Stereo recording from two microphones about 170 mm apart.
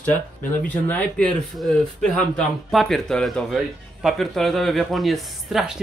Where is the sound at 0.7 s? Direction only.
10° left (ahead or behind).